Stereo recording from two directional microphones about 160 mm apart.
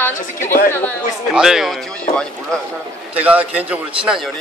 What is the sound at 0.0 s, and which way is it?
Speech, 15° left (ahead or behind).